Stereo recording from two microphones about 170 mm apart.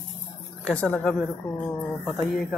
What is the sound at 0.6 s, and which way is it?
Speech, 5° left (ahead or behind).